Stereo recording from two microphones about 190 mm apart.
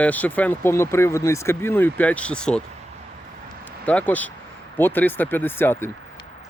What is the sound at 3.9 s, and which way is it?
Speech, 10° left (ahead or behind).